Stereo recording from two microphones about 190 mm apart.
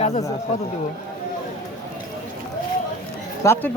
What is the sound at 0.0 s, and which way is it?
Speech, 35° left (ahead or behind).